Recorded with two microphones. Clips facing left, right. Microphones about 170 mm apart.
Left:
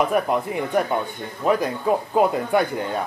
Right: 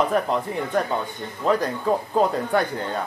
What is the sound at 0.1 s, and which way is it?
Speech, 10° left (ahead or behind).